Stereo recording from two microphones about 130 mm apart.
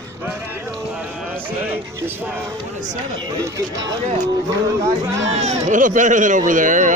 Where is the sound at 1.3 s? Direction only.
15° right (ahead or behind).